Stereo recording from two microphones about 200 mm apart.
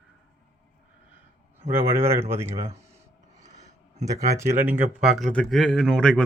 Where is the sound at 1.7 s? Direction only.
10° right (ahead or behind).